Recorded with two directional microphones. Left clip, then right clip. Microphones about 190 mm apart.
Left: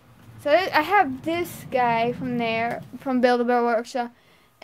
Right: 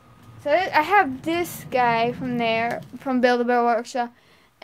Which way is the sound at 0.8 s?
Centre (ahead or behind).